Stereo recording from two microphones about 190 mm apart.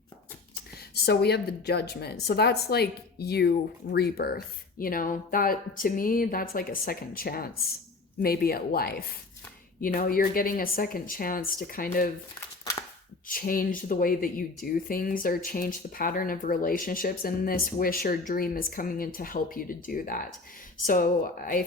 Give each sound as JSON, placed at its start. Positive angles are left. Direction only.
{"t": 1.0, "sound": "a woman's voice", "side_deg": 55}
{"t": 13.2, "sound": "a woman's voice", "side_deg": 50}